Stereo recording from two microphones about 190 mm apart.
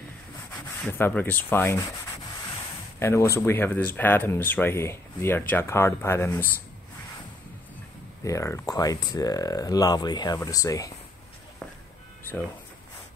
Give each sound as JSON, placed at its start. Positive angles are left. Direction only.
{"t": 0.8, "sound": "speech", "side_deg": 10}
{"t": 3.0, "sound": "speech", "side_deg": 15}
{"t": 8.2, "sound": "speech", "side_deg": 15}